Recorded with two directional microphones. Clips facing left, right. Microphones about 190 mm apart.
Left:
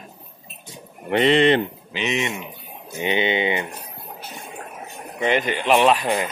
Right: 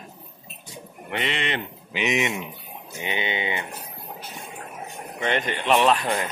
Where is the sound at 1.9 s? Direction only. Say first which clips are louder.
Right 1 dB; 15° right (ahead or behind).